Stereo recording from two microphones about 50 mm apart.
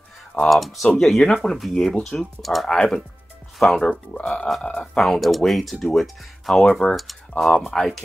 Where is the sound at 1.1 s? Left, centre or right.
Centre.